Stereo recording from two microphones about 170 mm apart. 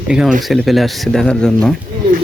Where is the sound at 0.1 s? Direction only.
5° right (ahead or behind).